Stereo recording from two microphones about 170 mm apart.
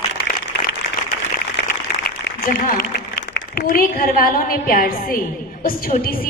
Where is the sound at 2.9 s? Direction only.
80° left.